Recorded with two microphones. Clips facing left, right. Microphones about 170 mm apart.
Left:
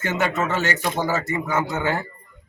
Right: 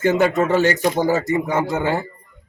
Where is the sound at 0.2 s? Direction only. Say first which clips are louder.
Right 7 dB; 35° right (ahead or behind).